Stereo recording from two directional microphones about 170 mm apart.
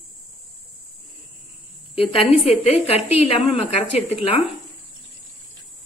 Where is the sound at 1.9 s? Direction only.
35° left (ahead or behind).